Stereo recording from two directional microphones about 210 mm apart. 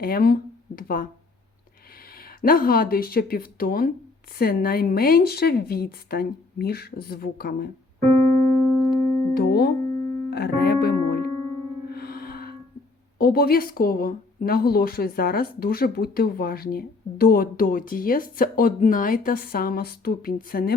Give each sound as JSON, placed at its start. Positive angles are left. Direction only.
{"t": 0.0, "sound": "a woman's voice", "side_deg": 45}
{"t": 2.4, "sound": "a woman's voice", "side_deg": 45}
{"t": 8.4, "sound": "keyboard", "side_deg": 10}
{"t": 9.3, "sound": "music", "side_deg": 45}
{"t": 9.8, "sound": "music", "side_deg": 5}
{"t": 10.2, "sound": "speech", "side_deg": 50}
{"t": 11.9, "sound": "music", "side_deg": 50}
{"t": 13.1, "sound": "a woman's voice", "side_deg": 45}